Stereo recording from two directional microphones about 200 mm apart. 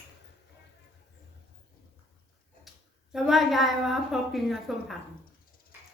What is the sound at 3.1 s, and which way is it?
A woman's voice, centre (ahead or behind).